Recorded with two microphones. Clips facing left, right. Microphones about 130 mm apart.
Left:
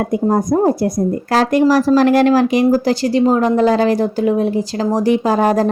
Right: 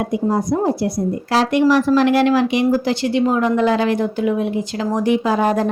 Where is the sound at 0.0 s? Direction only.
50° left (ahead or behind).